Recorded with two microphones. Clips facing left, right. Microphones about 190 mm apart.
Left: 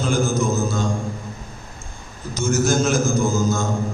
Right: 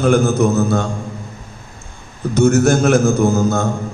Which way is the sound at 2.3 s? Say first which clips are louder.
Right 7 dB; 60° right (ahead or behind).